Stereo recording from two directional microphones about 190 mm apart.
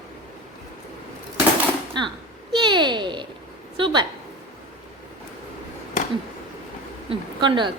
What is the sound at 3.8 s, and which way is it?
Speech, 25° right (ahead or behind).